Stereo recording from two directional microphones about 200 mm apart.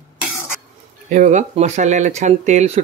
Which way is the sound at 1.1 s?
40° right (ahead or behind).